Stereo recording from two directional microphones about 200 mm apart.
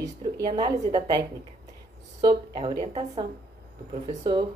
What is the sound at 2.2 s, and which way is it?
A woman's voice, 20° right (ahead or behind).